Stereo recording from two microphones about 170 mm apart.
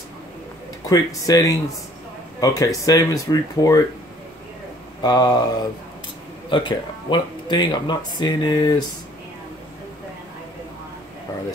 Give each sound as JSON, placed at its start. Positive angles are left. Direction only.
{"t": 0.8, "sound": "speech", "side_deg": 20}
{"t": 5.0, "sound": "speech", "side_deg": 25}
{"t": 6.5, "sound": "speech", "side_deg": 25}